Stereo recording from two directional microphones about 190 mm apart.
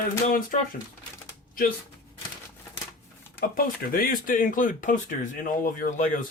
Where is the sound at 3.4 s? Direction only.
50° left (ahead or behind).